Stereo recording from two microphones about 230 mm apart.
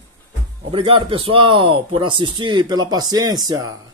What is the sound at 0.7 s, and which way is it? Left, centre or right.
Speech, right.